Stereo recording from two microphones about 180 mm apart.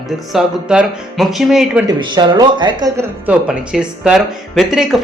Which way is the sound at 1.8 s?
25° right (ahead or behind).